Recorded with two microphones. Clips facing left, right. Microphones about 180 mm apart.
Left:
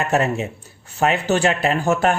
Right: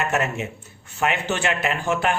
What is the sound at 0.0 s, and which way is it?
Speech, 35° left (ahead or behind).